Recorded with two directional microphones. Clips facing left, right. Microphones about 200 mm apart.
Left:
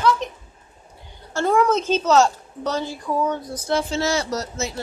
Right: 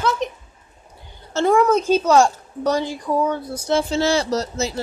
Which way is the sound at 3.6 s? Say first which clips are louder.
Right 3 dB; 30° right (ahead or behind).